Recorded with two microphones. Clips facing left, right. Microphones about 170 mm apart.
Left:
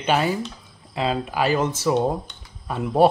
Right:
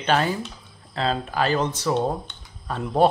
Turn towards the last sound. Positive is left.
turn(degrees=10)  # may be behind; listen again after turning